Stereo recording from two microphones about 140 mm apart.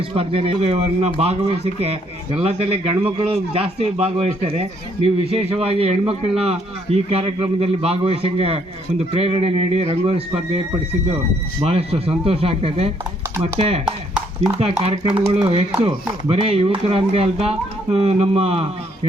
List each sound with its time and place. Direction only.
0.1 s speech: 40° right (ahead or behind)
11.6 s speech: 45° right (ahead or behind)